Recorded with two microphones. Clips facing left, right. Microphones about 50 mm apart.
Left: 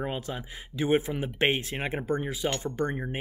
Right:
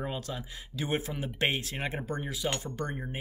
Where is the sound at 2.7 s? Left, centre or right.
Left.